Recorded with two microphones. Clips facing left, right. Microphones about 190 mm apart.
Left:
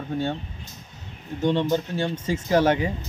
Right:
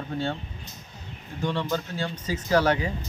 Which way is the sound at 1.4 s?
20° left (ahead or behind).